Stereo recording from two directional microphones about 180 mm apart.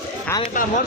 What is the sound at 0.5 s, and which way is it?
Speech, 50° left (ahead or behind).